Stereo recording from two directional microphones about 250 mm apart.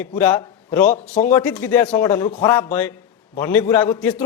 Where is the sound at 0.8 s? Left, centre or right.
Left.